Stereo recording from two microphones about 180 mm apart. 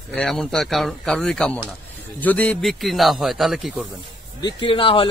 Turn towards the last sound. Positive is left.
turn(degrees=30)  # may be behind; listen again after turning